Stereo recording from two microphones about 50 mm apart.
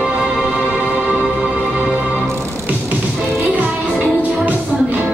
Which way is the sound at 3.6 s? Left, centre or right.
Right.